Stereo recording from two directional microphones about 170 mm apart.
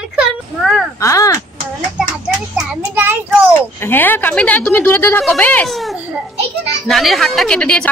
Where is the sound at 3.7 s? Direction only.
10° left (ahead or behind).